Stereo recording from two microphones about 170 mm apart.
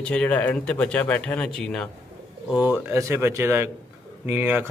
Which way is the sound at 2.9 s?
15° right (ahead or behind).